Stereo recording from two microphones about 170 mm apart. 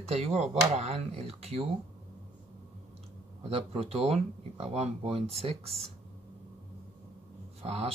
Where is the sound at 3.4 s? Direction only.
35° right (ahead or behind).